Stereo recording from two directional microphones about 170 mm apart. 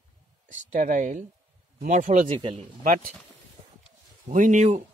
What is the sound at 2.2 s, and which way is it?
Speech, 35° right (ahead or behind).